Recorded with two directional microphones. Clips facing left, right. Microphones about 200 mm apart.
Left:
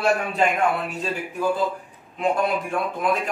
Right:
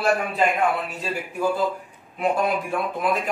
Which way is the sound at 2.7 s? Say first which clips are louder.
Even; centre (ahead or behind).